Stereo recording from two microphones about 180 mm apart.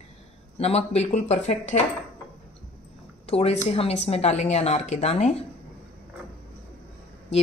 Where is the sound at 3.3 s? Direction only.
35° left (ahead or behind).